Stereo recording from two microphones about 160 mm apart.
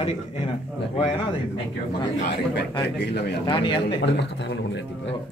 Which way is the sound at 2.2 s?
90° left.